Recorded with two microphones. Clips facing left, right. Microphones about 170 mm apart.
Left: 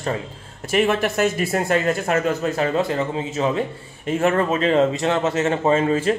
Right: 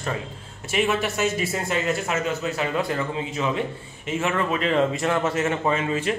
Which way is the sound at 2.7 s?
30° left (ahead or behind).